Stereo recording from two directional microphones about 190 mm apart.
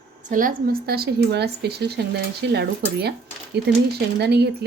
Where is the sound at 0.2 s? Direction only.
45° right (ahead or behind).